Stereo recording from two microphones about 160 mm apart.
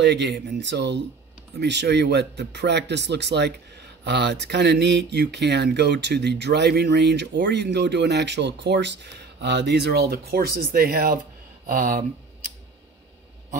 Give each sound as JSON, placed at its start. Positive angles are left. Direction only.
{"t": 0.0, "sound": "speech", "side_deg": -90}